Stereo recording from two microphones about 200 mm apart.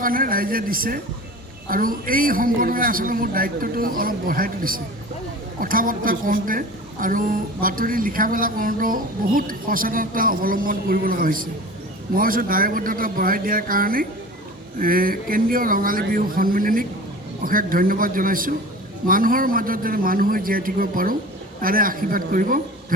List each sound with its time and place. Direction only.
0.0 s a woman's voice: 45° right (ahead or behind)